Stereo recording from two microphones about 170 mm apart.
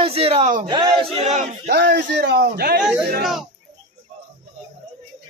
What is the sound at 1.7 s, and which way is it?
A man's voice, 85° right.